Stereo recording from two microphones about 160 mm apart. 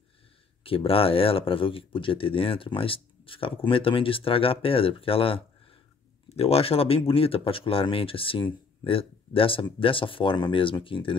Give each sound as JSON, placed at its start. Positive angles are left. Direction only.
{"t": 0.7, "sound": "speech", "side_deg": 35}